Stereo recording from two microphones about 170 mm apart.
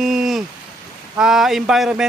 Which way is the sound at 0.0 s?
Centre (ahead or behind).